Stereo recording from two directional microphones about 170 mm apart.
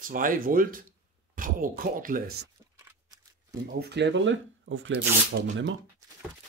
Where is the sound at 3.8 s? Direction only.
85° right.